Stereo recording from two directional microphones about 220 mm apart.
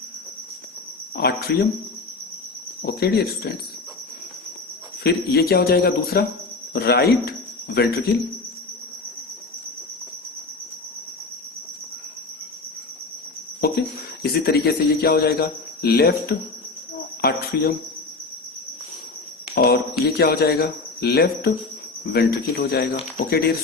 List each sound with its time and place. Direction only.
1.1 s speech: 45° left (ahead or behind)
2.8 s speech: 45° left (ahead or behind)
5.0 s speech: 45° left (ahead or behind)
13.6 s speech: 45° left (ahead or behind)
19.5 s speech: 45° left (ahead or behind)